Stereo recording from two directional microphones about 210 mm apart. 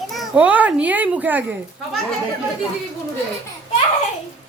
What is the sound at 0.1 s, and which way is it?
A child's voice, 5° right (ahead or behind).